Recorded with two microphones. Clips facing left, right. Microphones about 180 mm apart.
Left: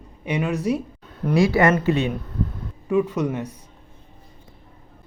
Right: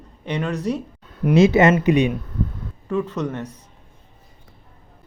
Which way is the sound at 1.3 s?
20° right (ahead or behind).